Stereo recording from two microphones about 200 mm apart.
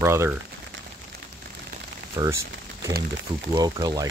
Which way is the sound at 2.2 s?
20° right (ahead or behind).